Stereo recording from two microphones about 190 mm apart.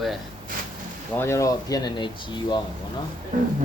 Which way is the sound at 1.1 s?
15° left (ahead or behind).